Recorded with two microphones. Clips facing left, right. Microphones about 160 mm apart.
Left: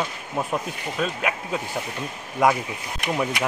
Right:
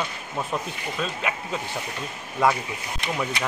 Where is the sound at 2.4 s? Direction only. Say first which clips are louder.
Left 2 dB; 20° left (ahead or behind).